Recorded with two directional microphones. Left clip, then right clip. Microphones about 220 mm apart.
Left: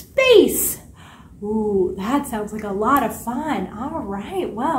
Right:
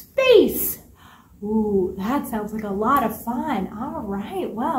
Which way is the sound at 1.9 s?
10° left (ahead or behind).